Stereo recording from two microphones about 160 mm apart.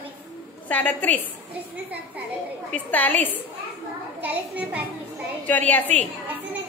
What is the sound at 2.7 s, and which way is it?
Speech, 10° left (ahead or behind).